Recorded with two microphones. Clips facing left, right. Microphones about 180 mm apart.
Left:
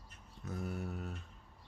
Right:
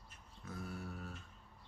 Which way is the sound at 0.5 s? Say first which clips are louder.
Left 5 dB; 20° left (ahead or behind).